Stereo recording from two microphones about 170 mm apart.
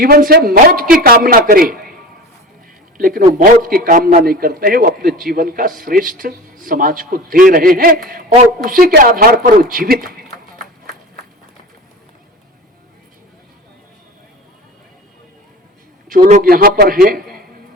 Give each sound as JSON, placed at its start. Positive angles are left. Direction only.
{"t": 0.0, "sound": "a man's voice", "side_deg": -60}
{"t": 3.0, "sound": "a man's voice", "side_deg": -55}
{"t": 16.0, "sound": "a man's voice", "side_deg": -55}